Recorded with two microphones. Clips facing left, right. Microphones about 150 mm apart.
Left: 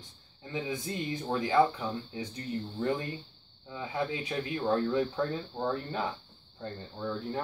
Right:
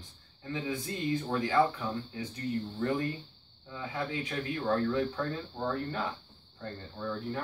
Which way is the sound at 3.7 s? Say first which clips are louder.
Left 2 dB; 20° left (ahead or behind).